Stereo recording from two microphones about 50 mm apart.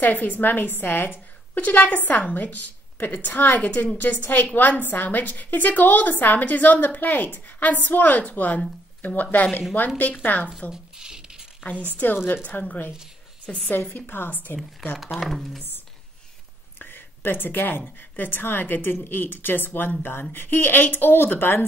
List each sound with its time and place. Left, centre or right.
0.0 s a woman's voice: left
10.7 s a sound: centre
12.0 s a woman's voice: left
13.5 s a woman's voice: centre
13.8 s a woman's voice: left
15.0 s speech: centre
16.7 s a sound: left
17.8 s a woman's voice: left